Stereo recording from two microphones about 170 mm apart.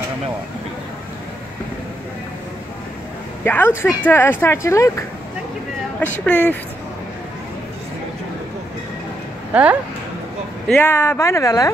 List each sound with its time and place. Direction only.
3.4 s speech: 10° left (ahead or behind)
6.1 s speech: 10° left (ahead or behind)
9.5 s speech: 10° right (ahead or behind)
10.7 s speech: 15° left (ahead or behind)